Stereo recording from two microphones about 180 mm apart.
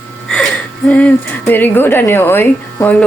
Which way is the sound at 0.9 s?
10° left (ahead or behind).